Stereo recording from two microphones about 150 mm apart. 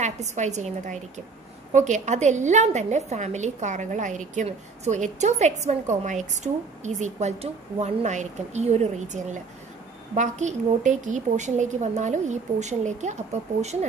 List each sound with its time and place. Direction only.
0.0 s a woman's voice: 50° right (ahead or behind)